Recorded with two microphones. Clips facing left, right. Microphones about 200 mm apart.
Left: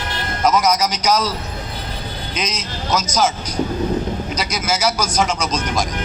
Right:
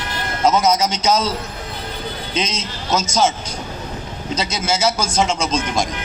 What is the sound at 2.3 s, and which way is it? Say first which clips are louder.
A man's voice: right 2 dB; 25° right (ahead or behind).